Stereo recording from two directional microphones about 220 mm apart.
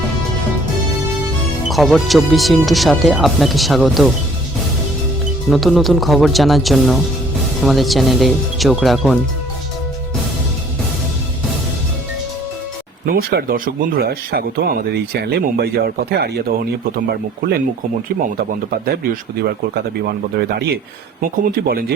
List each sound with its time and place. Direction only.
1.6 s speech: centre (ahead or behind)
5.5 s speech: centre (ahead or behind)
13.1 s speech: 40° right (ahead or behind)
20.0 s speech: 45° right (ahead or behind)